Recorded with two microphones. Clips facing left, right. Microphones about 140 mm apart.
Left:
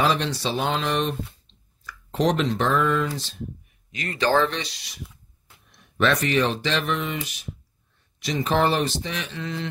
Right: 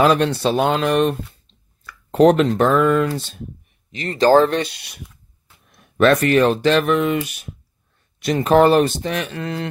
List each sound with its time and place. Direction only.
0.0 s speech: 55° right (ahead or behind)
3.9 s speech: 30° right (ahead or behind); by 9.7 s 55° right (ahead or behind)